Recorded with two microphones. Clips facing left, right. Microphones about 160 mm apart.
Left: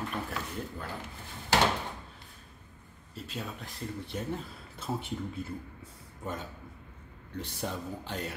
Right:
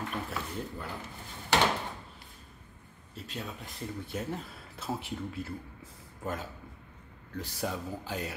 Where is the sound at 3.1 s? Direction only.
Centre (ahead or behind).